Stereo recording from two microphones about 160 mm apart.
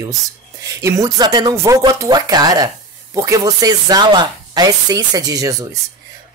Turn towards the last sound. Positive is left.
turn(degrees=-20)  # may be behind; listen again after turning